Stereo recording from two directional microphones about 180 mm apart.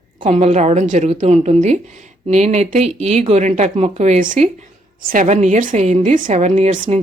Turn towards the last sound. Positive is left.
turn(degrees=-40)  # may be behind; listen again after turning